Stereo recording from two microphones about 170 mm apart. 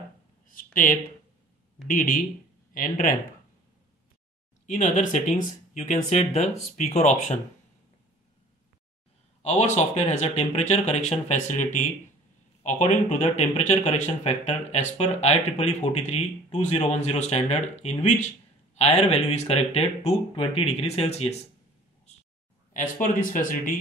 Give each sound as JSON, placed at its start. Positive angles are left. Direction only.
{"t": 0.5, "sound": "speech", "side_deg": 55}
{"t": 4.6, "sound": "speech", "side_deg": 45}
{"t": 9.4, "sound": "speech", "side_deg": 40}
{"t": 22.7, "sound": "speech", "side_deg": 50}